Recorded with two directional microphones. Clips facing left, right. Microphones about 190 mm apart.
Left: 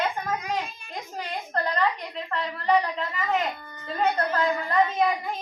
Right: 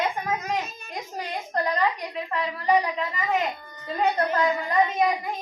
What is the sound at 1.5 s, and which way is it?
A woman's voice, 15° right (ahead or behind).